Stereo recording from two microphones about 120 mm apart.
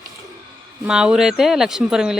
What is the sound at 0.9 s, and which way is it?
Speech, 5° right (ahead or behind).